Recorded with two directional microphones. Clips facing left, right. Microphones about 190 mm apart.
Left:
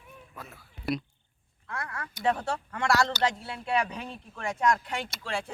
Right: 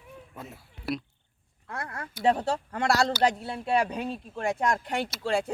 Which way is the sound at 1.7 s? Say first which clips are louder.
Right 1 dB; 35° right (ahead or behind).